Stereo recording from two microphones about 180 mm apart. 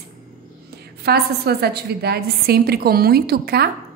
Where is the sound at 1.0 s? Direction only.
60° right (ahead or behind).